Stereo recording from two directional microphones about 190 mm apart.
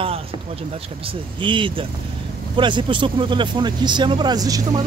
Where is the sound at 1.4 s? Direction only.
25° right (ahead or behind).